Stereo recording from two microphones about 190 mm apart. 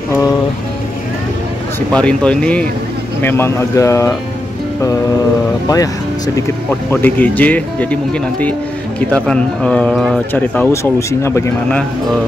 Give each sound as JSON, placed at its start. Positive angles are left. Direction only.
{"t": 1.9, "sound": "speech", "side_deg": 5}
{"t": 5.7, "sound": "speech", "side_deg": 20}